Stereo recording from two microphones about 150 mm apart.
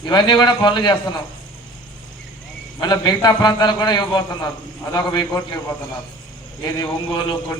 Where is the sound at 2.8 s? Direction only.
30° left (ahead or behind).